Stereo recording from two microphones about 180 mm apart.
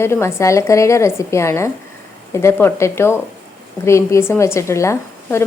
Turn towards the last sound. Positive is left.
turn(degrees=15)  # may be behind; listen again after turning